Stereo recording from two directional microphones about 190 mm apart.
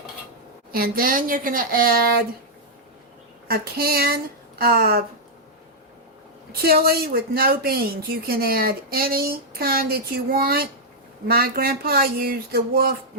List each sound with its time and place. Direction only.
0.7 s speech: 50° right (ahead or behind)
3.5 s speech: 55° right (ahead or behind)
6.5 s speech: 55° right (ahead or behind)